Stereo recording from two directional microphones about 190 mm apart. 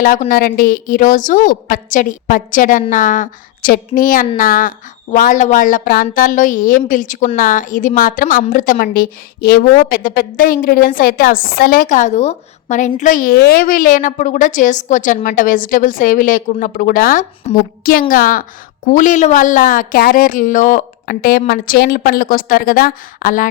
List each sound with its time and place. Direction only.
0.0 s a woman's voice: 50° left (ahead or behind)